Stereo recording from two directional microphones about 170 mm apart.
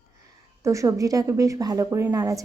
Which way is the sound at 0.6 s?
20° right (ahead or behind).